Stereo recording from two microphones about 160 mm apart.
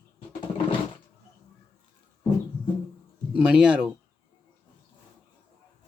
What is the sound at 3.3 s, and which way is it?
Speech, 5° right (ahead or behind).